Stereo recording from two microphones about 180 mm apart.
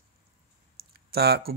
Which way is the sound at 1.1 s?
60° right (ahead or behind).